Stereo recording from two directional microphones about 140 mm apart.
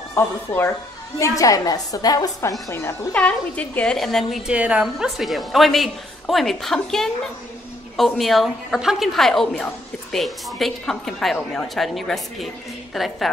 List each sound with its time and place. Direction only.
0.6 s a woman's voice: 20° left (ahead or behind); by 13.3 s centre (ahead or behind)